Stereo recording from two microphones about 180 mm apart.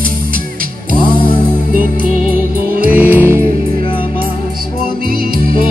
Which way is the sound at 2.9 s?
10° right (ahead or behind).